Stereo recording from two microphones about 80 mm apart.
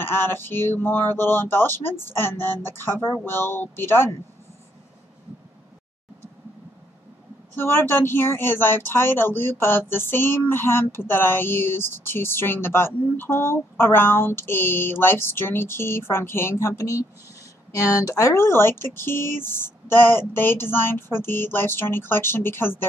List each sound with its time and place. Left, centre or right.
0.0 s speech: left
7.5 s speech: left